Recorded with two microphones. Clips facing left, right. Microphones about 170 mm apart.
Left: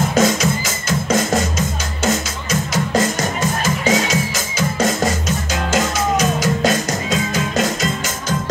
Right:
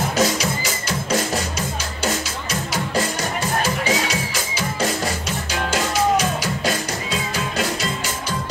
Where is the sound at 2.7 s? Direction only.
45° left (ahead or behind).